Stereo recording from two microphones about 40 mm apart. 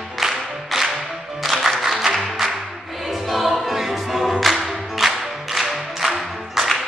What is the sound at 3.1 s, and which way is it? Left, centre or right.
Choir, centre.